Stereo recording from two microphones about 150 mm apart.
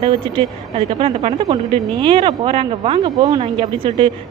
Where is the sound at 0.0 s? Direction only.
35° right (ahead or behind).